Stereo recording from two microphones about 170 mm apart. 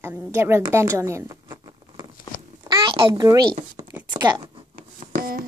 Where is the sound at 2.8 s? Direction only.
30° right (ahead or behind).